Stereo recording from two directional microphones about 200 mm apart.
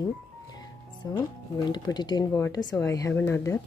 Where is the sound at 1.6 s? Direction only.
20° left (ahead or behind).